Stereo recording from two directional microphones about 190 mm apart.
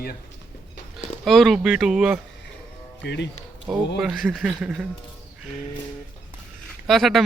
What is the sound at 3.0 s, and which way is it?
Speech, 65° left (ahead or behind).